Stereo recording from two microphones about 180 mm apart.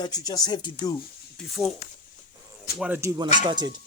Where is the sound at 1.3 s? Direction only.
Centre (ahead or behind).